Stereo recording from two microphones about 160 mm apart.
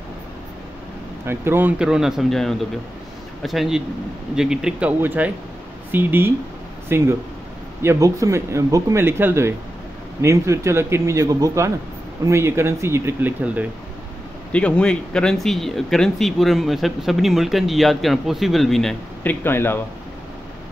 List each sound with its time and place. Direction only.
1.2 s speech: 15° right (ahead or behind)
14.5 s speech: 10° left (ahead or behind)
19.4 s speech: 15° left (ahead or behind)